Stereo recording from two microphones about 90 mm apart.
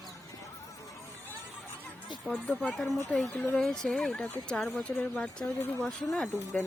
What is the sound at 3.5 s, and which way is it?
Speech, 5° left (ahead or behind).